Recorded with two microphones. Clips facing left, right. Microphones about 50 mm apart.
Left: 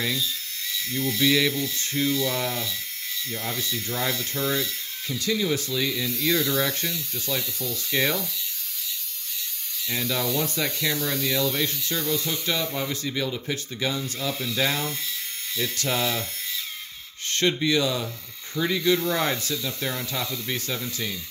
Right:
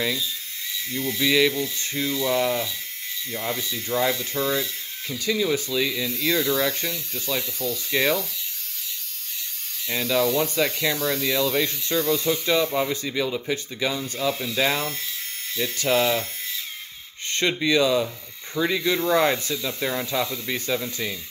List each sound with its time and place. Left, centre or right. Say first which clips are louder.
0.0 s speech: right 1 dB; centre; by 8.2 s right
9.8 s speech: right 5 dB; right
14.1 s speech: right 3 dB; right
17.4 s speech: right 2 dB; right